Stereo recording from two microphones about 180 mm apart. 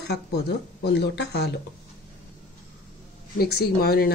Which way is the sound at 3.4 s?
60° left (ahead or behind).